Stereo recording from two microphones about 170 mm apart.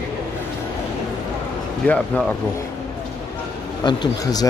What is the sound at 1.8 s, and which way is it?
Speech, 10° left (ahead or behind).